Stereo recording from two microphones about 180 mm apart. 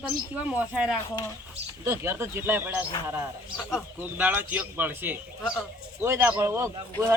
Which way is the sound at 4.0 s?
10° right (ahead or behind).